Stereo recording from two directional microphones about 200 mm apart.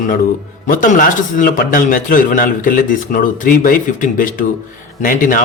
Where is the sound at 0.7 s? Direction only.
45° left (ahead or behind).